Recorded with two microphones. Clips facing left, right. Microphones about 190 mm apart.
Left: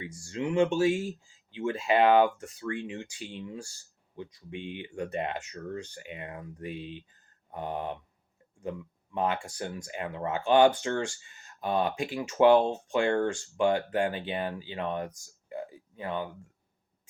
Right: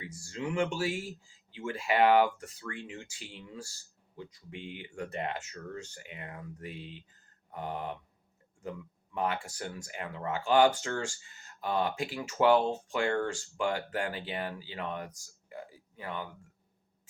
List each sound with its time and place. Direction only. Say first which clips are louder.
0.0 s speech: left 4 dB; 20° left (ahead or behind)
9.1 s speech: left 3 dB; 20° left (ahead or behind)
15.4 s a sound: left 7 dB; 25° left (ahead or behind)